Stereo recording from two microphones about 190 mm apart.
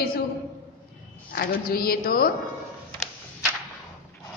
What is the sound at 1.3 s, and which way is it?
A woman's voice, 55° left (ahead or behind).